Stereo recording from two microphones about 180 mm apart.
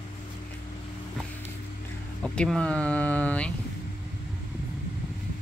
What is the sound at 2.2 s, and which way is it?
Speech, 5° left (ahead or behind).